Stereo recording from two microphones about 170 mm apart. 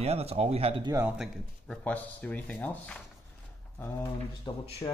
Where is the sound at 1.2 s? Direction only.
5° left (ahead or behind).